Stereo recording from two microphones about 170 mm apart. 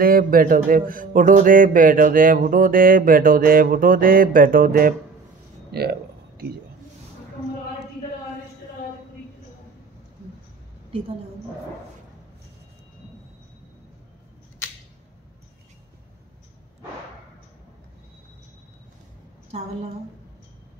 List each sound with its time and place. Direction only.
0.0 s music: 60° right (ahead or behind)
5.7 s a sound: 70° right (ahead or behind)
19.5 s a woman's voice: 35° right (ahead or behind)